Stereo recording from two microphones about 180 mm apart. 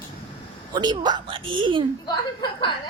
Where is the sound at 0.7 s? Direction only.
25° right (ahead or behind).